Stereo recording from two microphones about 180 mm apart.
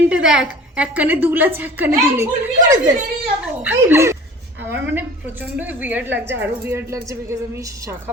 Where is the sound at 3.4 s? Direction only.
10° right (ahead or behind).